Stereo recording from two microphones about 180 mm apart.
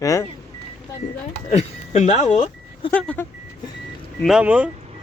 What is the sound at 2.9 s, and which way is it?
Speech, 10° left (ahead or behind).